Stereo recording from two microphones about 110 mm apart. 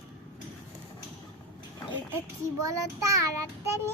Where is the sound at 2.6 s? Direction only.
30° right (ahead or behind).